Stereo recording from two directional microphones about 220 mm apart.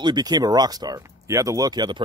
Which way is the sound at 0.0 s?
20° right (ahead or behind).